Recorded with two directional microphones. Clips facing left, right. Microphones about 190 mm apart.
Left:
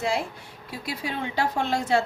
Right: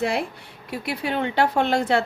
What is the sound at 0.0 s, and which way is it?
A woman's voice, 60° right (ahead or behind).